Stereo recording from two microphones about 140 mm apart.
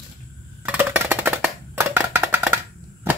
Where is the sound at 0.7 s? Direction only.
10° right (ahead or behind).